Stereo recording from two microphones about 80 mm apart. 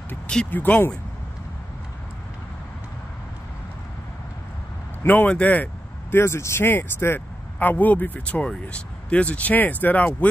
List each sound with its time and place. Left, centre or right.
0.5 s speech: left
5.0 s a man's voice: left
6.1 s speech: left